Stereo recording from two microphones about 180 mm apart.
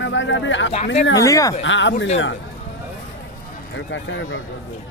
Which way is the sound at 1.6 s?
90° left.